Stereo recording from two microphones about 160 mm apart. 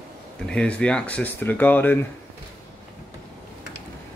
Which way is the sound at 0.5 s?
5° left (ahead or behind).